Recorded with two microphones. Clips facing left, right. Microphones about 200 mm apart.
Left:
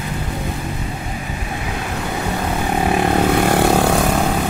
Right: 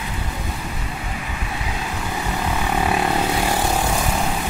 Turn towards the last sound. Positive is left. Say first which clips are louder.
# left 7 dB
turn(degrees=65)  # may be behind; listen again after turning